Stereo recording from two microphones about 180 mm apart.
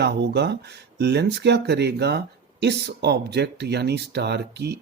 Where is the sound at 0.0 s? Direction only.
70° right (ahead or behind).